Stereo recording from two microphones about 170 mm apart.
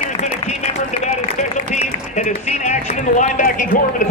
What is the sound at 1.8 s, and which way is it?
A man's voice, 45° left (ahead or behind).